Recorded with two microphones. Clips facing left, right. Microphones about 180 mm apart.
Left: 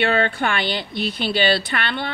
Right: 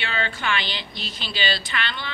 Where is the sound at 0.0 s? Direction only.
55° left (ahead or behind).